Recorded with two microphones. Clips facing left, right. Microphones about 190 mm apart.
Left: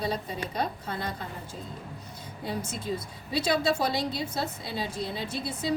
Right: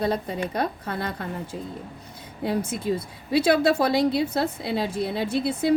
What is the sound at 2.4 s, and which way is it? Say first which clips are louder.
Speech: right 8 dB; 60° right (ahead or behind).